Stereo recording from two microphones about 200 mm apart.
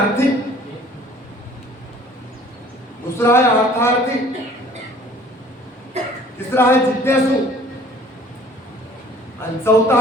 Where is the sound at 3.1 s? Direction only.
10° left (ahead or behind).